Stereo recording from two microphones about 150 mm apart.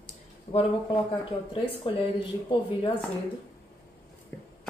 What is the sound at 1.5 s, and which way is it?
Speech, 35° left (ahead or behind).